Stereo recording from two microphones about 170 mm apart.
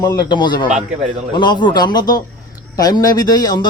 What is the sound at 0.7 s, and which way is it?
Speech, 45° right (ahead or behind).